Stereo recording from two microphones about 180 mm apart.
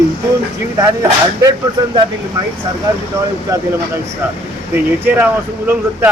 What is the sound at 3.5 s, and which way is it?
Speech, 20° right (ahead or behind).